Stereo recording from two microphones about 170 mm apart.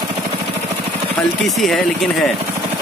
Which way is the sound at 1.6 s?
Centre (ahead or behind).